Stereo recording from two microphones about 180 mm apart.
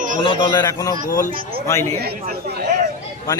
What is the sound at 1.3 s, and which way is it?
Speech, 50° right (ahead or behind).